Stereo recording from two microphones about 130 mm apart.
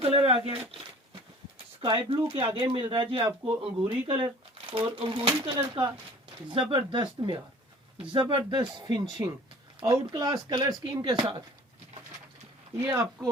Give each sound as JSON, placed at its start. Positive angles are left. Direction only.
{"t": 0.0, "sound": "a sound", "side_deg": -45}
{"t": 1.8, "sound": "speech", "side_deg": -40}
{"t": 9.2, "sound": "speech", "side_deg": -20}
{"t": 9.8, "sound": "speech", "side_deg": -30}
{"t": 12.8, "sound": "speech", "side_deg": -20}